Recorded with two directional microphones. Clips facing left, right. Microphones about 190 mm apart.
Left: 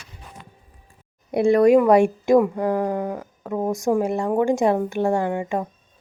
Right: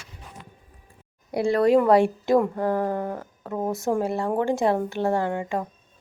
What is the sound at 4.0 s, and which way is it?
Speech, 20° left (ahead or behind).